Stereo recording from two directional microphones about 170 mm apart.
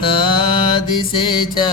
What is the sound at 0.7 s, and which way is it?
Mantra, 30° left (ahead or behind).